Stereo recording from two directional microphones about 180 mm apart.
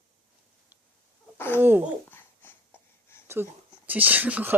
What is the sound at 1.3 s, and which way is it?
Speech, 10° left (ahead or behind).